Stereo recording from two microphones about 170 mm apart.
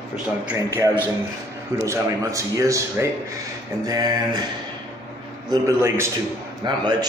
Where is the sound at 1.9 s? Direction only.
20° right (ahead or behind).